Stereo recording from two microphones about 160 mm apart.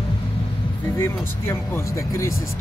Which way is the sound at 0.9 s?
15° left (ahead or behind).